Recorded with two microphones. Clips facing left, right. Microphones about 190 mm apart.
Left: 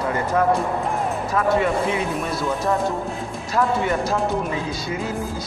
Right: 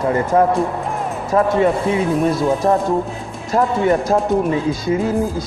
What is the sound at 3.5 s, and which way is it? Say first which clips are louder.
Speech: right 5 dB; 45° right (ahead or behind).